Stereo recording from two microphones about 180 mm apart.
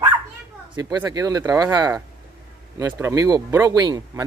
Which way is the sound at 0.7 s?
25° right (ahead or behind).